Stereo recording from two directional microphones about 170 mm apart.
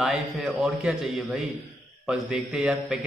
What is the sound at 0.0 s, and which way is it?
A man's voice, centre (ahead or behind).